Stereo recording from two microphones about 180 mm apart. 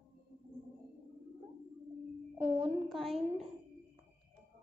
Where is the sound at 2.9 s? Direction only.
Centre (ahead or behind).